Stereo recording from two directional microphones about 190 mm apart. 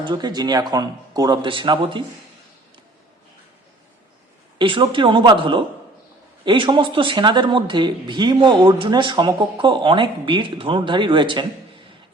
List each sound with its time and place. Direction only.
0.0 s speech: 25° right (ahead or behind)
4.5 s speech: 25° right (ahead or behind)